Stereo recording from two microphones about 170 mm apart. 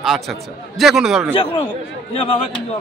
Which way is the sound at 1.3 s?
35° left (ahead or behind).